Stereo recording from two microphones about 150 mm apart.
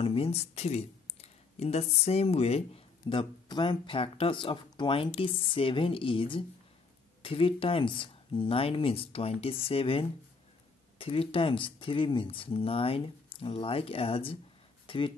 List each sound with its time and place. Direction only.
0.0 s speech: 40° left (ahead or behind)